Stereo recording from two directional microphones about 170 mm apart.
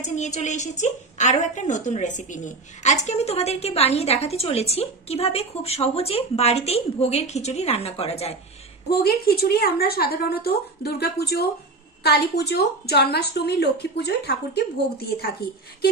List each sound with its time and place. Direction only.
0.0 s a woman's voice: 45° left (ahead or behind)
8.9 s a woman's voice: 65° left (ahead or behind)